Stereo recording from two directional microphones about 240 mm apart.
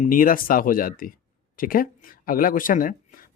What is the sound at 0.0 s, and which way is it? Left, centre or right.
Speech, left.